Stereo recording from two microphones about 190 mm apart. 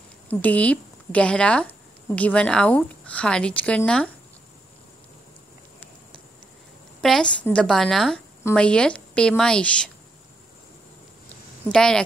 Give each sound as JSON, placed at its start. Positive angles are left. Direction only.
{"t": 0.3, "sound": "speech", "side_deg": 10}
{"t": 7.0, "sound": "a woman's voice", "side_deg": 5}
{"t": 11.7, "sound": "a woman's voice", "side_deg": 5}